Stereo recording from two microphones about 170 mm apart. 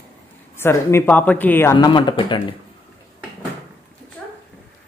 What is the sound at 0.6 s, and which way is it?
Speech, 15° left (ahead or behind).